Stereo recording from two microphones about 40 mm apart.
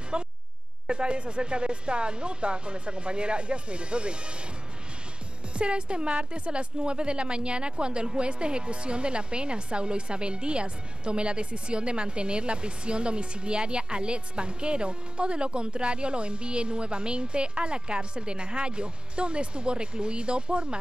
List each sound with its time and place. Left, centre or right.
0.1 s a sound: right
0.8 s a woman's voice: right
5.5 s a woman's voice: right